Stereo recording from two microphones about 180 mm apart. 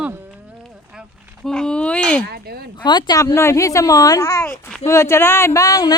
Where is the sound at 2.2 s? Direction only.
60° right (ahead or behind).